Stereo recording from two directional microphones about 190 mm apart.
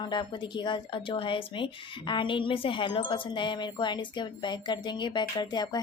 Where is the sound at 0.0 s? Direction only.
25° left (ahead or behind).